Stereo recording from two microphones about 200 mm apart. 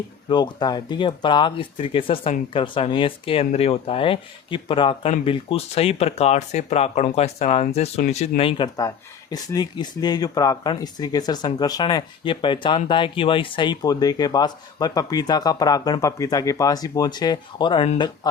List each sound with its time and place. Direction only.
0.3 s speech: 20° left (ahead or behind)